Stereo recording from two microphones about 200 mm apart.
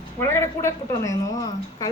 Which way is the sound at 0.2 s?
10° left (ahead or behind).